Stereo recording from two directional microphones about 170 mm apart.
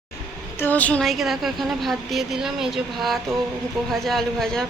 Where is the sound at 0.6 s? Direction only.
10° left (ahead or behind).